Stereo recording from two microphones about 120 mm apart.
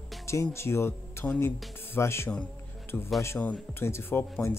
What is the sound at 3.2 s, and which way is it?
Speech, 20° left (ahead or behind).